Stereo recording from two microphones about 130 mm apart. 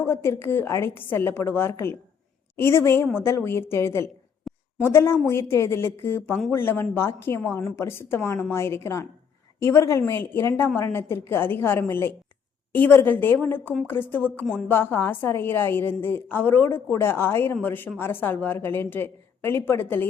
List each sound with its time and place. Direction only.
0.0 s a woman's voice: 20° left (ahead or behind)
4.5 s a sound: 5° left (ahead or behind)
4.8 s a woman's voice: 20° left (ahead or behind)